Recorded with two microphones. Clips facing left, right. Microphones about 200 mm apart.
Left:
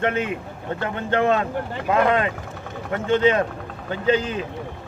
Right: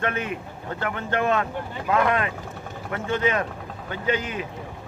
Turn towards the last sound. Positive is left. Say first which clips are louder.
# left 5 dB
turn(degrees=30)  # may be behind; listen again after turning